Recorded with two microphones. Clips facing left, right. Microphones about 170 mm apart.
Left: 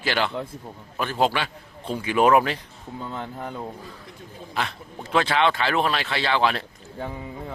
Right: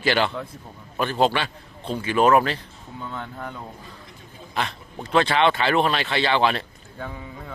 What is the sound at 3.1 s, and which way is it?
Speech, 30° left (ahead or behind).